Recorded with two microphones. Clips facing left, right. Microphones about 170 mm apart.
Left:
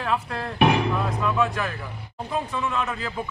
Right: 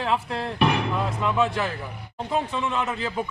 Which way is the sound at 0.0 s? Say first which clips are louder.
Right 1 dB; 25° right (ahead or behind).